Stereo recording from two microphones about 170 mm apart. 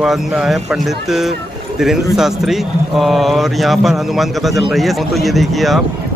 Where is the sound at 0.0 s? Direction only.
5° right (ahead or behind).